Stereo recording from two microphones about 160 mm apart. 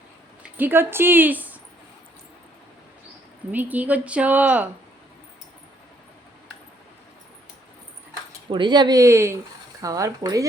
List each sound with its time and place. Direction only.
0.5 s speech: 10° right (ahead or behind)
3.5 s speech: 10° right (ahead or behind)
8.4 s speech: 30° right (ahead or behind)